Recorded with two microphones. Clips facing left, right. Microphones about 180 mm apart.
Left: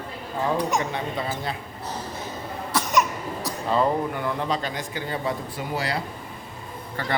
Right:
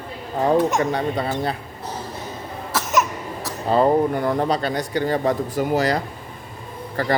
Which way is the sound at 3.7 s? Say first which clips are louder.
Right 6 dB; 40° right (ahead or behind).